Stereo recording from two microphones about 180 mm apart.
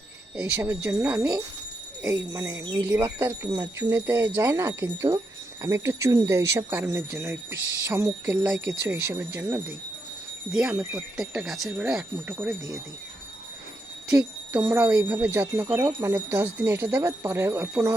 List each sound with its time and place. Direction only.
0.3 s speech: 15° right (ahead or behind)
14.1 s speech: 5° right (ahead or behind)